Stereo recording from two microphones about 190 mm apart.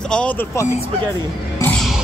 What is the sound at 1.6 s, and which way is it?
Music, 5° left (ahead or behind).